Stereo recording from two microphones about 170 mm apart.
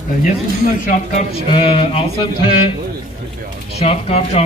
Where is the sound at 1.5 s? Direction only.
30° left (ahead or behind).